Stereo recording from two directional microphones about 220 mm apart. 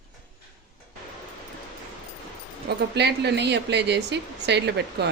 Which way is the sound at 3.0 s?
50° right (ahead or behind).